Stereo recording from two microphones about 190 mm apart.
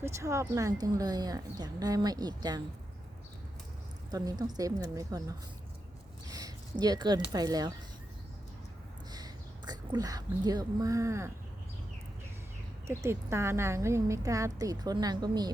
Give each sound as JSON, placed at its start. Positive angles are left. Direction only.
{"t": 0.0, "sound": "speech", "side_deg": -15}
{"t": 4.1, "sound": "speech", "side_deg": -20}
{"t": 6.2, "sound": "a sound", "side_deg": -20}
{"t": 7.3, "sound": "speech", "side_deg": -20}
{"t": 9.1, "sound": "speech", "side_deg": -20}
{"t": 12.9, "sound": "speech", "side_deg": -15}